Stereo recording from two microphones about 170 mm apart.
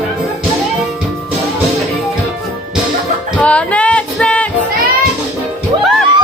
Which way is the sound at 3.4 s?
5° left (ahead or behind).